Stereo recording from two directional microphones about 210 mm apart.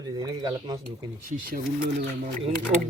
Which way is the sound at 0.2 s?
20° right (ahead or behind).